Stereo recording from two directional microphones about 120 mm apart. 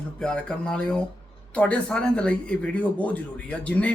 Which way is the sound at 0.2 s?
5° left (ahead or behind).